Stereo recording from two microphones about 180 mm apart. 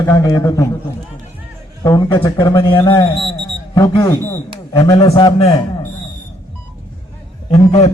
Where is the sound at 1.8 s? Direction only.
20° left (ahead or behind).